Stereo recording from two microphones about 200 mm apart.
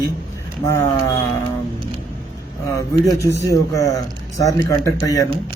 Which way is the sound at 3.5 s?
15° left (ahead or behind).